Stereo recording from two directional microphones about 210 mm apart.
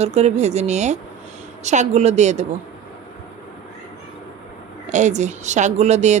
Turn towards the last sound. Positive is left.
turn(degrees=-35)  # may be behind; listen again after turning